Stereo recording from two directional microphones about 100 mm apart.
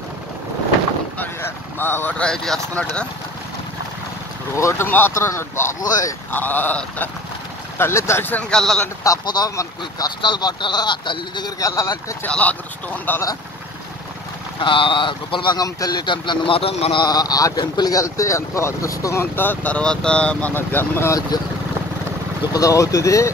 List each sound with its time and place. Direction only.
1.1 s a sound: 20° left (ahead or behind)
2.2 s speech: 5° left (ahead or behind)
4.6 s speech: 25° left (ahead or behind)
8.5 s speech: 5° left (ahead or behind)
9.0 s speech: 40° left (ahead or behind)
11.6 s speech: 35° left (ahead or behind)
12.3 s speech: 15° left (ahead or behind)
14.6 s speech: 60° left (ahead or behind)
15.6 s speech: 40° left (ahead or behind); by 17.0 s 70° left (ahead or behind)
17.0 s speech: 40° left (ahead or behind)
19.3 s speech: 20° left (ahead or behind)
21.3 s speech: 45° left (ahead or behind)